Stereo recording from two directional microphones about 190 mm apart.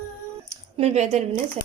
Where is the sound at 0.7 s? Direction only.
35° right (ahead or behind).